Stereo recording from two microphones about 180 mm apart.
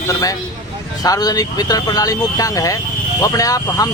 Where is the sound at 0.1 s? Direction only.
20° left (ahead or behind).